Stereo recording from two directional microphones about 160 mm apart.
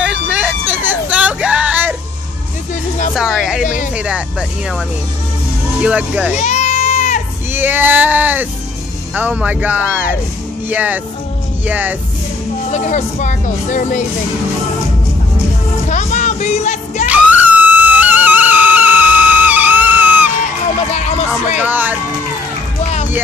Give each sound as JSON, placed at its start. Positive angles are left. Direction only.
{"t": 0.0, "sound": "hubbub", "side_deg": -5}
{"t": 3.2, "sound": "speech", "side_deg": -5}
{"t": 3.6, "sound": "music", "side_deg": 55}
{"t": 3.9, "sound": "speech", "side_deg": -5}
{"t": 6.3, "sound": "goat", "side_deg": 45}
{"t": 7.5, "sound": "speech", "side_deg": -10}
{"t": 12.7, "sound": "speech", "side_deg": 50}
{"t": 15.9, "sound": "music", "side_deg": 50}
{"t": 17.1, "sound": "music", "side_deg": -10}
{"t": 21.5, "sound": "speech", "side_deg": -10}